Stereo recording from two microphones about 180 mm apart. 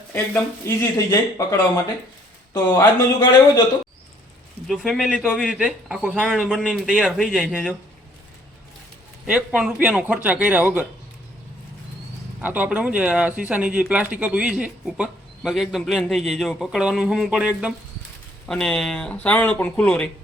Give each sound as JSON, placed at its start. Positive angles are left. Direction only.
{"t": 0.6, "sound": "speech", "side_deg": 15}
{"t": 4.7, "sound": "a man's voice", "side_deg": 0}
{"t": 9.2, "sound": "speech", "side_deg": -5}
{"t": 12.4, "sound": "speech", "side_deg": -10}